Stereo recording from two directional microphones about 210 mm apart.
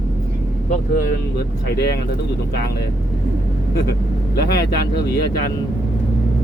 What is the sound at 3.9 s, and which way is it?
Speech, 50° left (ahead or behind).